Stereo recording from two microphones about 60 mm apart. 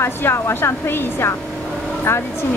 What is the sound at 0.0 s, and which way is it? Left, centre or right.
Speech, left.